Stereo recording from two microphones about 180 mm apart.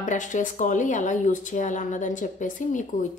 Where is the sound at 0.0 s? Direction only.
45° left (ahead or behind).